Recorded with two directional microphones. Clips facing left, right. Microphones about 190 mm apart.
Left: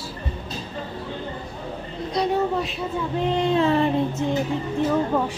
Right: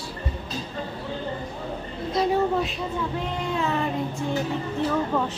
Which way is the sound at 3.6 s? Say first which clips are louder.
Left 4 dB; 30° left (ahead or behind).